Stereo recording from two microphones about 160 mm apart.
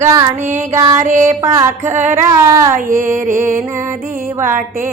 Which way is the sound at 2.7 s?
55° right (ahead or behind).